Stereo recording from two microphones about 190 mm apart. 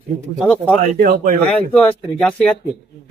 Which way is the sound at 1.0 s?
50° right (ahead or behind).